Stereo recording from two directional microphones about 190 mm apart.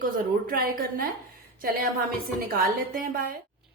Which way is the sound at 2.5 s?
50° right (ahead or behind).